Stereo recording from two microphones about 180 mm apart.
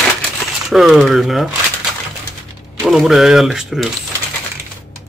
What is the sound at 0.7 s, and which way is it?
Speech, centre (ahead or behind).